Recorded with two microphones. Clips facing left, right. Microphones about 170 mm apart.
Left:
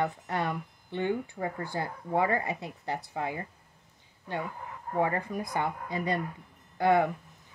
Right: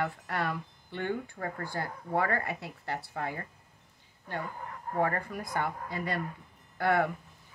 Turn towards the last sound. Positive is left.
turn(degrees=20)  # may be behind; listen again after turning